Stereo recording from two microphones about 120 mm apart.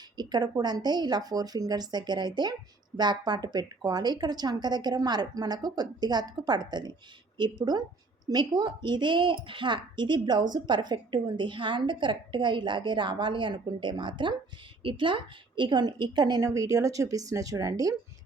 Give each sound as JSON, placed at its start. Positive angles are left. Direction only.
{"t": 0.2, "sound": "a woman's voice", "side_deg": -35}